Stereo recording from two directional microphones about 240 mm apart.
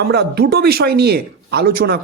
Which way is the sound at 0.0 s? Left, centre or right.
Right.